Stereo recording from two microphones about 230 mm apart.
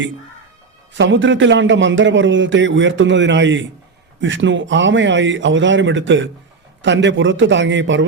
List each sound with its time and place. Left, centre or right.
0.9 s a man's voice: right